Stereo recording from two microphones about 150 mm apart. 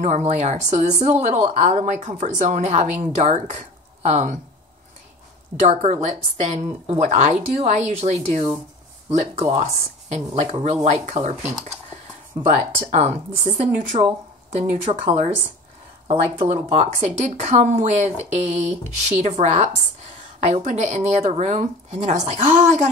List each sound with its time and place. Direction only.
0.0 s speech: 50° right (ahead or behind)
5.6 s speech: 45° right (ahead or behind)
13.0 s speech: 45° right (ahead or behind)
16.1 s speech: 50° right (ahead or behind)